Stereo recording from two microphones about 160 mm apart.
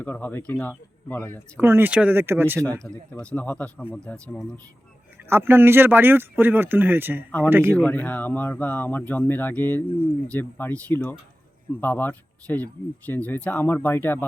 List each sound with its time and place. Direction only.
0.0 s speech: 10° left (ahead or behind)
1.5 s speech: 15° right (ahead or behind)
2.8 s speech: 5° left (ahead or behind)
5.3 s speech: 15° right (ahead or behind)
7.3 s speech: 10° left (ahead or behind)
7.5 s speech: 15° right (ahead or behind)
7.8 s speech: 10° left (ahead or behind)